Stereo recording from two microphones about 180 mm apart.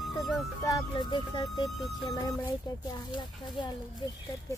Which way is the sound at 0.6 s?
20° left (ahead or behind).